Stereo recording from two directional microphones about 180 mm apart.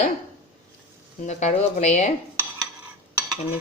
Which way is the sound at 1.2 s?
40° left (ahead or behind).